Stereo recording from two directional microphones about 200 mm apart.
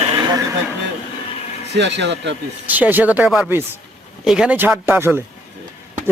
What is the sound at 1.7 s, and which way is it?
Speech, 60° right (ahead or behind).